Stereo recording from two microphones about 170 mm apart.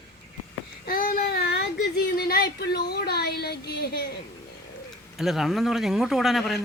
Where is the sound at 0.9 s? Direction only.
55° left (ahead or behind); by 4.0 s 75° left (ahead or behind).